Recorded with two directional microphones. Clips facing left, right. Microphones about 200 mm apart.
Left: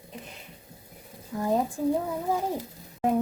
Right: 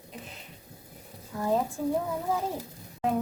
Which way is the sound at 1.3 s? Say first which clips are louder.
Left 1 dB; 20° left (ahead or behind).